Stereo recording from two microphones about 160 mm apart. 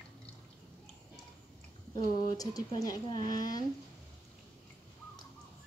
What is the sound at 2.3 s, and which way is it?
A woman's voice, 25° left (ahead or behind).